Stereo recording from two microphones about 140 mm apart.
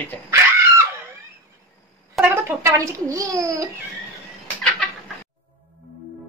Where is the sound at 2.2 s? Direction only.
15° right (ahead or behind).